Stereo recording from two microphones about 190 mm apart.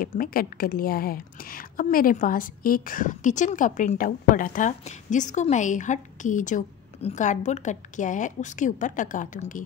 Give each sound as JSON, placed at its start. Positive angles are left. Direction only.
{"t": 0.0, "sound": "a woman's voice", "side_deg": 50}